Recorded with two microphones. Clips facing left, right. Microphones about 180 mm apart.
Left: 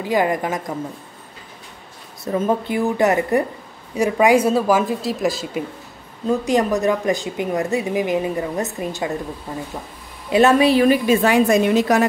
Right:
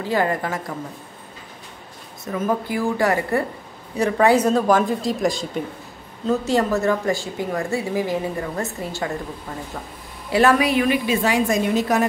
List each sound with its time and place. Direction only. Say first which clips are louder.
0.0 s speech: left 2 dB; 15° left (ahead or behind)
2.2 s speech: left 3 dB; 30° left (ahead or behind); by 5.6 s 5° left (ahead or behind)
6.2 s speech: left 2 dB; 15° left (ahead or behind); by 11.0 s 35° left (ahead or behind)
11.1 s a woman's voice: left 5 dB; 60° left (ahead or behind); by 12.1 s 85° left